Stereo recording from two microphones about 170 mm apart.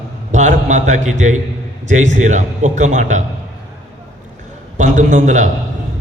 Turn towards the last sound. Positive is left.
turn(degrees=-45)  # may be behind; listen again after turning